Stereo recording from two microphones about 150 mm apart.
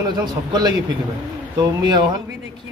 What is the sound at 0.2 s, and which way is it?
A woman's voice, 30° right (ahead or behind).